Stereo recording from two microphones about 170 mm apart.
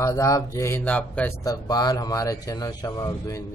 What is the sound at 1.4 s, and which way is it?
Speech, 20° left (ahead or behind).